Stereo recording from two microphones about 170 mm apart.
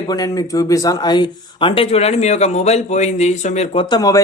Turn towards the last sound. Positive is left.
turn(degrees=20)  # may be behind; listen again after turning